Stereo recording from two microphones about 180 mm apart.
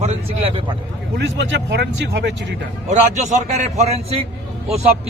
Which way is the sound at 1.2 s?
75° right (ahead or behind).